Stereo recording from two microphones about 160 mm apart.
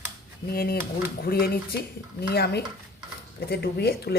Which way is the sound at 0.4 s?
70° left (ahead or behind).